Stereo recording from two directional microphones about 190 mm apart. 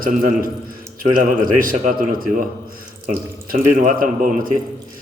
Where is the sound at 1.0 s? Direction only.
45° right (ahead or behind).